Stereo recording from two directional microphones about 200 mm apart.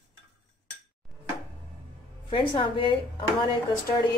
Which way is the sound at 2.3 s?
25° left (ahead or behind).